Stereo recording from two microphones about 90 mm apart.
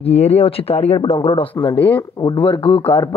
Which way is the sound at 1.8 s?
20° left (ahead or behind).